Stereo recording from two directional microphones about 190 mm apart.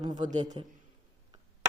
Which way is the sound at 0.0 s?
20° right (ahead or behind).